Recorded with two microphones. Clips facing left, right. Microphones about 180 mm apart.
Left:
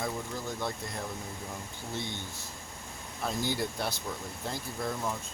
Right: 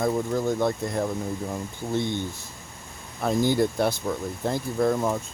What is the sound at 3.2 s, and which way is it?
Speech, 55° right (ahead or behind).